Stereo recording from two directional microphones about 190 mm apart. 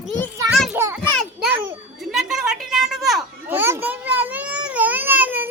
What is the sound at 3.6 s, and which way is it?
Babbling, 10° right (ahead or behind).